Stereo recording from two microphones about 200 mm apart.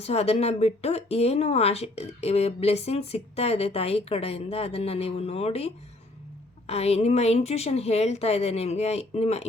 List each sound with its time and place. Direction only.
0.0 s speech: 30° left (ahead or behind)